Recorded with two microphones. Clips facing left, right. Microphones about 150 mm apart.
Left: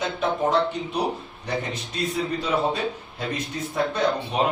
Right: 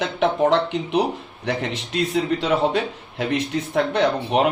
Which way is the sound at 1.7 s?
75° right (ahead or behind).